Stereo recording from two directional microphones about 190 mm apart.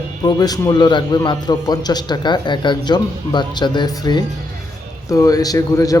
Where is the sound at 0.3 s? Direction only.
20° left (ahead or behind).